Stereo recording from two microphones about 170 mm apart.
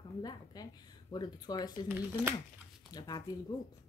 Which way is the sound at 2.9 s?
25° left (ahead or behind).